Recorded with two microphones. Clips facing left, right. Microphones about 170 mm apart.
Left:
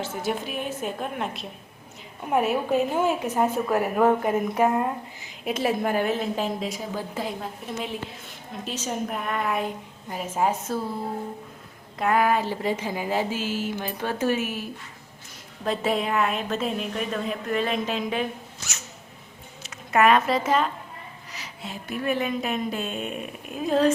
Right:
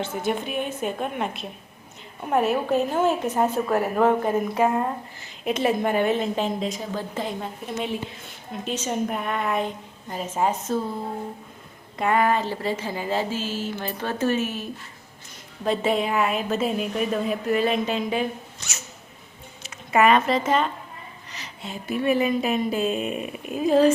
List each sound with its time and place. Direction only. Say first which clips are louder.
0.3 s a woman's voice: right 2 dB; centre (ahead or behind)
5.5 s a woman's voice: right 2 dB; 5° left (ahead or behind)
11.9 s speech: right 1 dB; centre (ahead or behind)
15.6 s a woman's voice: right 2 dB; centre (ahead or behind)